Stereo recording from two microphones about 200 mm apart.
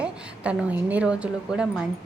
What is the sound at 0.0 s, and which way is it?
A woman's voice, 5° right (ahead or behind).